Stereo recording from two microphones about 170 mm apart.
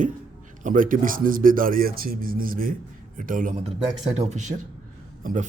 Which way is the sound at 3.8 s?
40° right (ahead or behind).